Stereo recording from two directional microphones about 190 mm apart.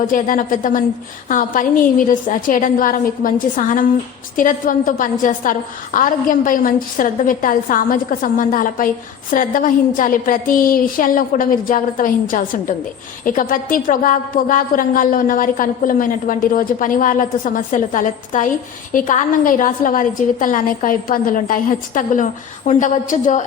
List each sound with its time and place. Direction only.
0.1 s a woman's voice: 45° left (ahead or behind)